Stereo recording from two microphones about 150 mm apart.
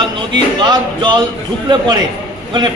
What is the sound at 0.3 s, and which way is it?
Speech, 30° right (ahead or behind).